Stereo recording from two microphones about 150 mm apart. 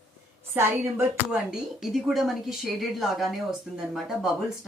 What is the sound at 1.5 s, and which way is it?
A woman's voice, centre (ahead or behind).